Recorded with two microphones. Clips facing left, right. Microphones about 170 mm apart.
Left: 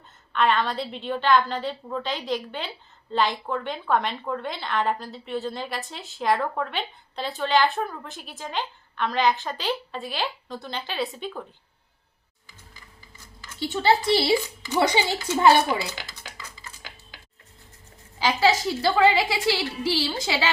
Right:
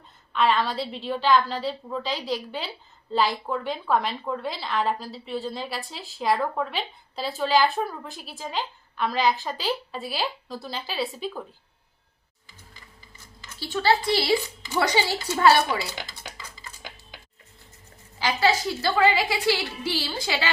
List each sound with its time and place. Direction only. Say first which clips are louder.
0.3 s a woman's voice: even; centre (ahead or behind)
13.6 s speech: left 1 dB; 20° left (ahead or behind)
18.2 s a woman's voice: left 2 dB; 20° left (ahead or behind)